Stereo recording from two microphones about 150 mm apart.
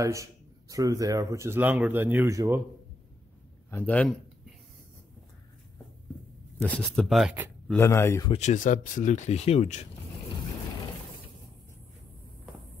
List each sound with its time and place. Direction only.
0.0 s speech: 20° right (ahead or behind)
3.7 s speech: 10° left (ahead or behind)
6.6 s speech: 5° left (ahead or behind)
7.8 s speech: 15° left (ahead or behind)
8.3 s speech: 50° left (ahead or behind)